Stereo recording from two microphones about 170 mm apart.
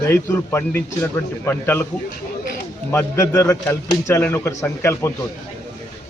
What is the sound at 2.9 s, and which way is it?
Speech, 15° left (ahead or behind).